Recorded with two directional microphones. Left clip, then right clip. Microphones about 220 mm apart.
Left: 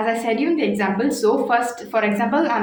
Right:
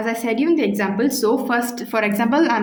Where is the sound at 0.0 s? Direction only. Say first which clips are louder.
Left 1 dB; 40° right (ahead or behind).